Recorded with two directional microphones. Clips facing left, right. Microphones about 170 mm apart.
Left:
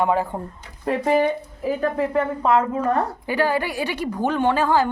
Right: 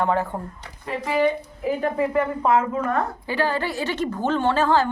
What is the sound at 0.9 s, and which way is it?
Speech, 45° left (ahead or behind).